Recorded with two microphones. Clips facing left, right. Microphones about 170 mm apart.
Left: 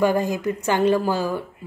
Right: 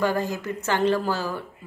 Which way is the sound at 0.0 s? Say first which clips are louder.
Left 5 dB; 15° left (ahead or behind).